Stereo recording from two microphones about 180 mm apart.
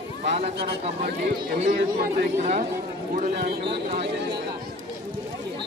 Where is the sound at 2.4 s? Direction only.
40° right (ahead or behind).